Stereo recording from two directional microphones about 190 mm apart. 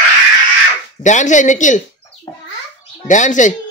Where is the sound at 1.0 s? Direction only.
40° left (ahead or behind).